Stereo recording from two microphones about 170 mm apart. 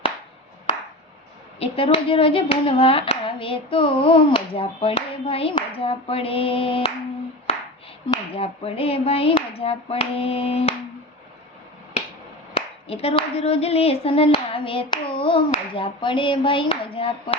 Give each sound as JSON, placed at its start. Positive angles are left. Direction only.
{"t": 1.5, "sound": "hands", "side_deg": 35}
{"t": 8.3, "sound": "hands", "side_deg": 35}
{"t": 12.5, "sound": "speech", "side_deg": 35}